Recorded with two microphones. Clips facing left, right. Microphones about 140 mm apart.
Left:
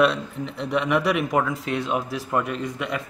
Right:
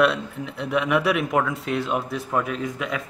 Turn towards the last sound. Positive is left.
turn(degrees=0)  # may be behind; listen again after turning